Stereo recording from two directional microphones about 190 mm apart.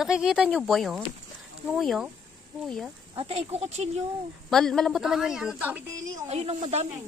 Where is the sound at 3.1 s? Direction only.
30° right (ahead or behind).